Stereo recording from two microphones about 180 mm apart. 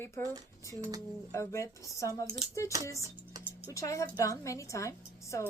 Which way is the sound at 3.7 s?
15° left (ahead or behind).